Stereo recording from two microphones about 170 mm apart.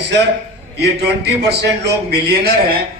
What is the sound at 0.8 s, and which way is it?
A man's voice, 75° right (ahead or behind).